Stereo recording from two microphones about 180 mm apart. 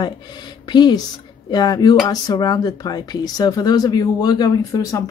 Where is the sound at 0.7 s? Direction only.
25° left (ahead or behind).